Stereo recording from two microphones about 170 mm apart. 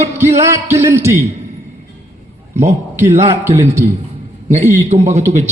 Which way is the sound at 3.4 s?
15° right (ahead or behind).